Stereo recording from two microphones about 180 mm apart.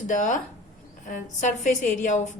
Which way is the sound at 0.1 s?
45° left (ahead or behind).